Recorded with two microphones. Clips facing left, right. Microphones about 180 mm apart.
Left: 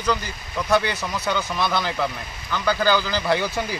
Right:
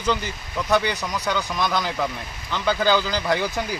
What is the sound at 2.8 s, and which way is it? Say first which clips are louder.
Speech: right 1 dB; 15° right (ahead or behind).